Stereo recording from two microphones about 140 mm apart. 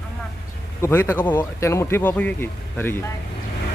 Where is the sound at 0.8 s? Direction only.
20° left (ahead or behind).